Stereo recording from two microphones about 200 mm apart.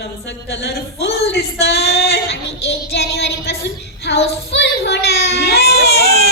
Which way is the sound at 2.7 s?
55° left (ahead or behind).